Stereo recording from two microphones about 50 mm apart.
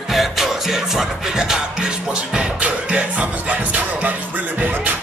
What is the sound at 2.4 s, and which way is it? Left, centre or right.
Music, right.